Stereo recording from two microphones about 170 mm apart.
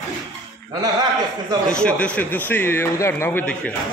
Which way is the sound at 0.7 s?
20° right (ahead or behind).